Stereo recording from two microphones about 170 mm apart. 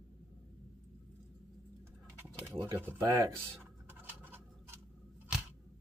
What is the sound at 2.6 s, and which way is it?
Speech, 15° right (ahead or behind).